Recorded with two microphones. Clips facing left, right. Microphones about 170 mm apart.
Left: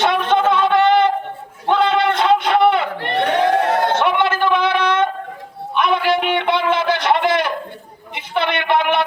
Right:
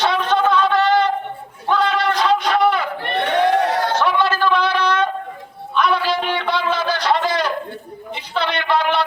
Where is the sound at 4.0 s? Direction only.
20° left (ahead or behind).